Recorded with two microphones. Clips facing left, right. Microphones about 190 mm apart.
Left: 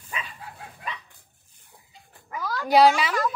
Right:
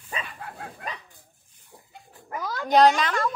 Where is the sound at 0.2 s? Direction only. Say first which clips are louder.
Right 3 dB; 55° right (ahead or behind).